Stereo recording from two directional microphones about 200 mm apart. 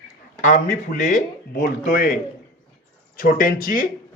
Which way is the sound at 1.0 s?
40° left (ahead or behind).